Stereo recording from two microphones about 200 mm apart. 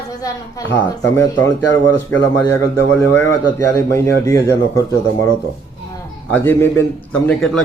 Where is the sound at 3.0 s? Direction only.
10° left (ahead or behind).